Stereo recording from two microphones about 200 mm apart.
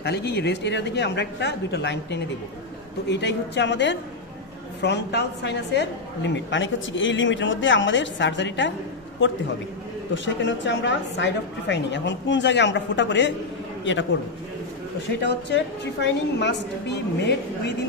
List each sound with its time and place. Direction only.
0.0 s a woman's voice: 55° left (ahead or behind)
10.1 s a woman's voice: 65° left (ahead or behind)
15.2 s a woman's voice: 60° left (ahead or behind)